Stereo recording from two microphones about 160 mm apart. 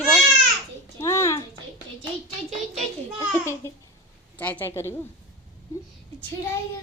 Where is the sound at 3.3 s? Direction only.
15° left (ahead or behind).